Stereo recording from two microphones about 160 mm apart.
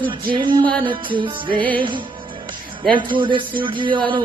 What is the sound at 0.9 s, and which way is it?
Speech, 30° right (ahead or behind).